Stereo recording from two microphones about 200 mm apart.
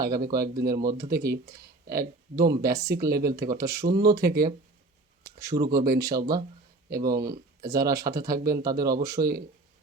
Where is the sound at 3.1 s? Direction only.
50° right (ahead or behind).